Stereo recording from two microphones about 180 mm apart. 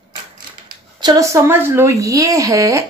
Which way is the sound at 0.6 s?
20° right (ahead or behind).